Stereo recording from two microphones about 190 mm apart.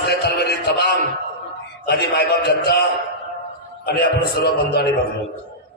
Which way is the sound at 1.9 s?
60° left (ahead or behind).